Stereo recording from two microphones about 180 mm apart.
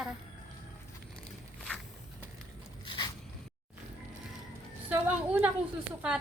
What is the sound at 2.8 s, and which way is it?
Squish, 25° left (ahead or behind).